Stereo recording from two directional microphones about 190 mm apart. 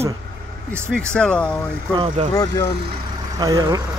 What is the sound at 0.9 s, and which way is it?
Speech, 5° left (ahead or behind).